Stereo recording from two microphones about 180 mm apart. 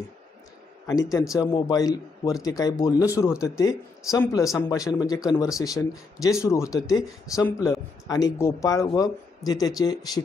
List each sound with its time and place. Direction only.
1.1 s a man's voice: 20° left (ahead or behind)